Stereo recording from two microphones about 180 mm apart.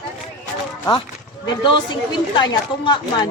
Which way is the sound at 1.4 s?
25° left (ahead or behind).